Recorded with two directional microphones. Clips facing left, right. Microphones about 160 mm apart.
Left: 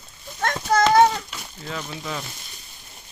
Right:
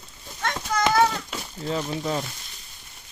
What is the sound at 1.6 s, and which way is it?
Speech, 30° right (ahead or behind).